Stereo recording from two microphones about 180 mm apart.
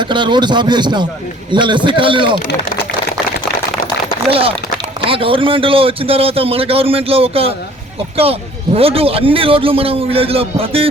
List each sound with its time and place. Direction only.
0.0 s speech: 25° right (ahead or behind)
4.3 s a man's voice: 30° right (ahead or behind)